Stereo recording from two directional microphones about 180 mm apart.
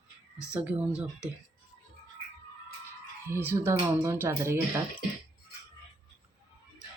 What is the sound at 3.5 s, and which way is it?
Speech, 20° right (ahead or behind).